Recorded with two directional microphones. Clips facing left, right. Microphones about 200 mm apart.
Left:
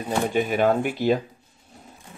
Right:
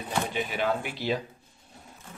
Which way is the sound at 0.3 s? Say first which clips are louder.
Left 10 dB; 50° left (ahead or behind).